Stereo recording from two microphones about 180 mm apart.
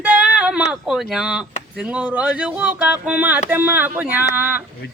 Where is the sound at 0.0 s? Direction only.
5° right (ahead or behind).